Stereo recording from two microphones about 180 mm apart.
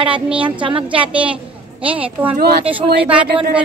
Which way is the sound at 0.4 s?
30° right (ahead or behind).